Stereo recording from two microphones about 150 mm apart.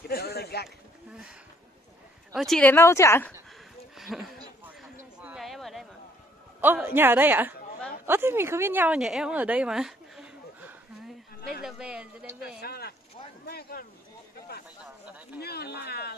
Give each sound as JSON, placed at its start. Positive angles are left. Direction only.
{"t": 0.1, "sound": "a sound", "side_deg": 90}
{"t": 2.3, "sound": "speech", "side_deg": 0}
{"t": 2.7, "sound": "speech", "side_deg": 20}
{"t": 3.9, "sound": "a sound", "side_deg": 0}
{"t": 6.6, "sound": "a woman's voice", "side_deg": -15}
{"t": 12.5, "sound": "speech", "side_deg": 90}
{"t": 15.0, "sound": "speech", "side_deg": -10}
{"t": 15.4, "sound": "speech", "side_deg": 90}